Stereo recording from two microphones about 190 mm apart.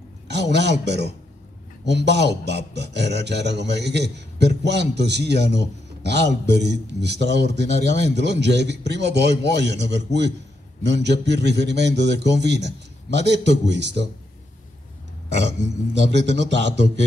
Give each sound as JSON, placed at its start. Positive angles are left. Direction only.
{"t": 0.3, "sound": "a man's voice", "side_deg": -65}
{"t": 15.2, "sound": "speech", "side_deg": -65}